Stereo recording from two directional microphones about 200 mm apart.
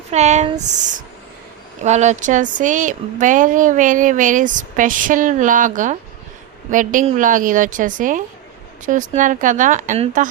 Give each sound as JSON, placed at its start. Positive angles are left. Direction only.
{"t": 0.1, "sound": "speech", "side_deg": -35}